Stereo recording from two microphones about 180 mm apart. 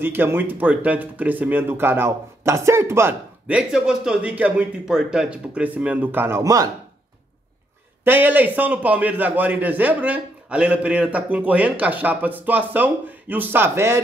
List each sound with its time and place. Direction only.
0.0 s speech: 10° right (ahead or behind)
8.0 s speech: 10° right (ahead or behind)